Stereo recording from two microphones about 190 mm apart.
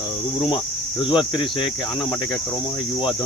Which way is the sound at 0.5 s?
25° left (ahead or behind).